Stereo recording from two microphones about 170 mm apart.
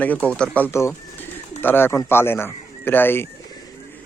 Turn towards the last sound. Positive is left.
turn(degrees=15)  # may be behind; listen again after turning